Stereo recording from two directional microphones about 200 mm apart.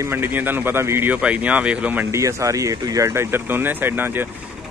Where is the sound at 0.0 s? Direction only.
10° right (ahead or behind).